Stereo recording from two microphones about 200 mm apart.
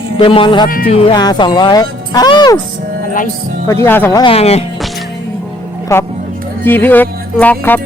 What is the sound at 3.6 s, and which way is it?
Speech, 10° left (ahead or behind).